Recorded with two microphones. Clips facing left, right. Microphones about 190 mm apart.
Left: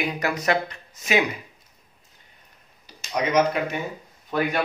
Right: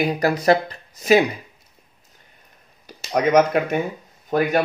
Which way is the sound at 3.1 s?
55° right (ahead or behind).